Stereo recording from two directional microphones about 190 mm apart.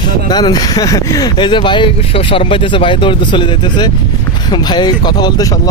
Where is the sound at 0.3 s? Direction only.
20° left (ahead or behind).